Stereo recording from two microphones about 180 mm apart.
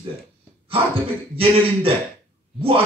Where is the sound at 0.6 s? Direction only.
30° right (ahead or behind).